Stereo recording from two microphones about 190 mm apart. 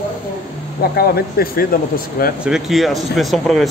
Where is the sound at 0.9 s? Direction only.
55° left (ahead or behind).